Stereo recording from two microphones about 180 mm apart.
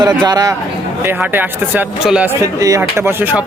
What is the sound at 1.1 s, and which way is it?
Speech, 10° right (ahead or behind).